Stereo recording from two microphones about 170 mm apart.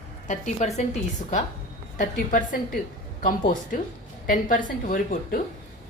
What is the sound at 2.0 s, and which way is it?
A woman's voice, 50° left (ahead or behind).